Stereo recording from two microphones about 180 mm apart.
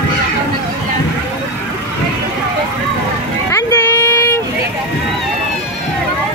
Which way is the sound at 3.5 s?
15° left (ahead or behind).